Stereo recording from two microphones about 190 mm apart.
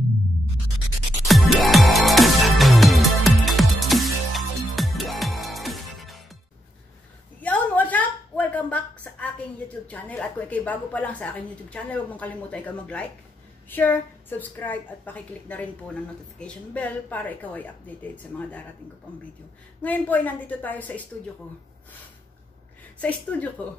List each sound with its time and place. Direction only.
1.2 s music: centre (ahead or behind)
7.3 s a sound: 10° left (ahead or behind)
9.8 s a woman's voice: 10° left (ahead or behind)
19.8 s a woman's voice: 10° left (ahead or behind)
22.9 s a woman's voice: 10° left (ahead or behind)